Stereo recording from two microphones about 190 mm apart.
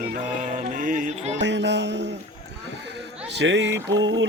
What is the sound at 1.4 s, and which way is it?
Music, 70° right (ahead or behind).